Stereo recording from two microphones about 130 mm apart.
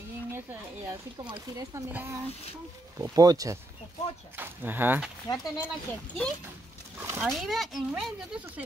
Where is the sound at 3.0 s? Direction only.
30° right (ahead or behind).